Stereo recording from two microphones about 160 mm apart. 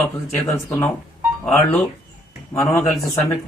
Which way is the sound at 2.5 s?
15° left (ahead or behind).